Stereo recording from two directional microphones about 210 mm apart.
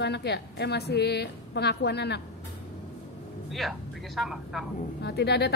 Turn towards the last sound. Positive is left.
turn(degrees=55)  # may be behind; listen again after turning